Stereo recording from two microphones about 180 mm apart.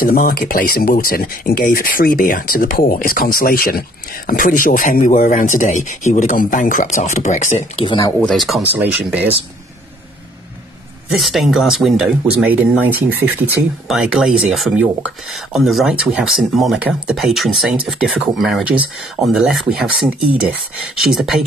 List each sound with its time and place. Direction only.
0.0 s speech: 55° left (ahead or behind); by 8.1 s 25° left (ahead or behind)
8.2 s speech: centre (ahead or behind)
11.1 s speech: centre (ahead or behind)